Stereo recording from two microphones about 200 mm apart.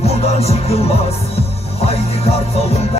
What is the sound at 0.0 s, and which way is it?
Music, 30° left (ahead or behind).